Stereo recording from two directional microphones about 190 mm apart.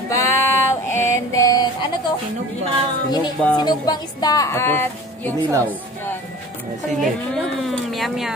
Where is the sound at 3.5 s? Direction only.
20° left (ahead or behind).